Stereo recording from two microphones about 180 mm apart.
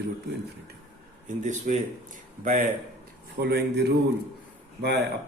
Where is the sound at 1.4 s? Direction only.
45° right (ahead or behind).